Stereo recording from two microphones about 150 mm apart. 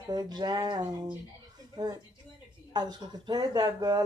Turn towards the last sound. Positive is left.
turn(degrees=-25)  # may be behind; listen again after turning